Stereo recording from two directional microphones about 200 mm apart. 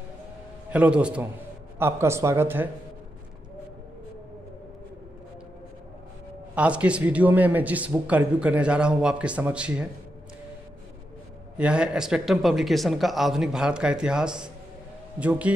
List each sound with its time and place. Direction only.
0.7 s a man's voice: 5° right (ahead or behind)
6.5 s speech: 5° right (ahead or behind)
11.5 s a man's voice: 5° right (ahead or behind)